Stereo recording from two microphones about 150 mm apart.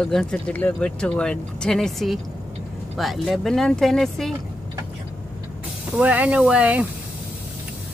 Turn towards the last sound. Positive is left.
turn(degrees=-10)  # may be behind; listen again after turning